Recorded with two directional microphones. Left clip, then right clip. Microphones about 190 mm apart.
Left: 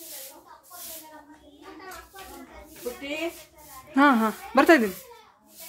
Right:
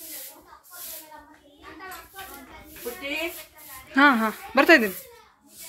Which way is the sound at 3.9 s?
20° left (ahead or behind).